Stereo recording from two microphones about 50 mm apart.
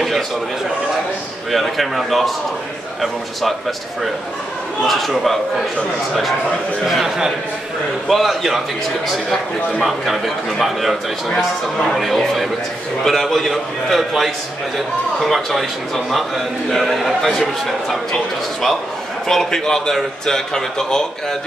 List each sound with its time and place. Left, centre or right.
1.5 s a man's voice: centre
4.8 s a man's voice: centre
6.9 s a man's voice: centre
9.8 s a man's voice: centre
15.3 s a man's voice: centre
19.2 s speech: centre